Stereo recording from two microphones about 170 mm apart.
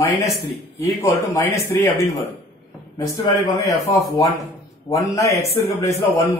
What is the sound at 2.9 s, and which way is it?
Speech, 20° left (ahead or behind).